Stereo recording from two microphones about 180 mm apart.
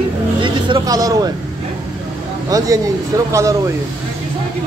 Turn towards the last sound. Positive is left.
turn(degrees=-15)  # may be behind; listen again after turning